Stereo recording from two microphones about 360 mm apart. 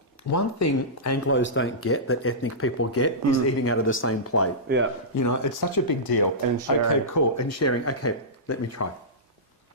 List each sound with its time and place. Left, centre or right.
0.3 s speech: left
1.3 s speech: left
4.7 s a man's voice: right
5.1 s speech: left
6.7 s speech: left
7.1 s speech: left